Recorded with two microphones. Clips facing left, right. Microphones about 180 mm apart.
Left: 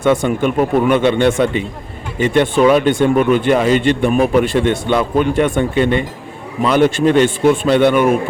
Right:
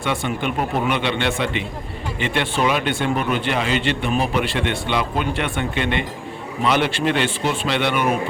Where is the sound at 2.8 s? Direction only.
45° left (ahead or behind).